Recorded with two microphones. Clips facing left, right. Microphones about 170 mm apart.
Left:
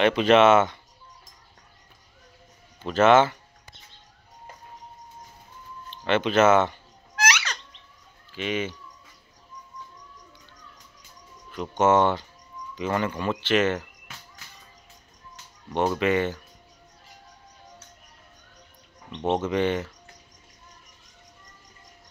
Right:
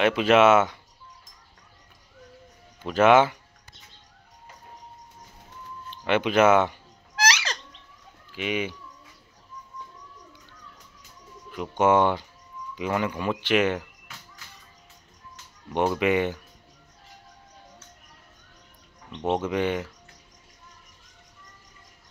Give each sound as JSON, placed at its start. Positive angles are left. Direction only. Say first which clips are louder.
{"t": 0.0, "sound": "speech", "louder": "left 1 dB", "side_deg": -5}
{"t": 2.8, "sound": "speech", "louder": "even", "side_deg": -10}
{"t": 6.0, "sound": "speech", "louder": "even", "side_deg": -10}
{"t": 7.2, "sound": "bird", "louder": "even", "side_deg": -35}
{"t": 8.4, "sound": "speech", "louder": "even", "side_deg": -10}
{"t": 11.8, "sound": "speech", "louder": "even", "side_deg": -10}
{"t": 15.7, "sound": "speech", "louder": "even", "side_deg": -10}
{"t": 19.2, "sound": "speech", "louder": "left 1 dB", "side_deg": -10}